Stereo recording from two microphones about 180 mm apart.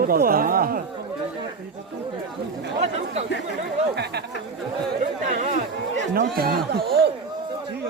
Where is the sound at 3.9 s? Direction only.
65° right (ahead or behind).